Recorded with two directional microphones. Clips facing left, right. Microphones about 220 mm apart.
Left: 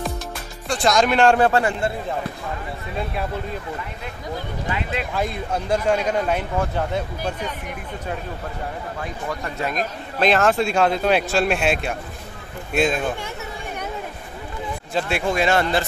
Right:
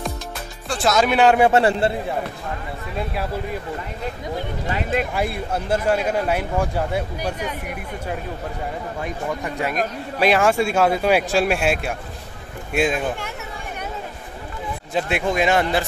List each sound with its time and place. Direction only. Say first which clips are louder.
0.7 s speech: even; 5° right (ahead or behind)
1.6 s speech: right 4 dB; 35° right (ahead or behind)
4.6 s speech: right 4 dB; 40° right (ahead or behind)
5.1 s speech: right 1 dB; 10° right (ahead or behind)
15.0 s speech: right 1 dB; 15° right (ahead or behind)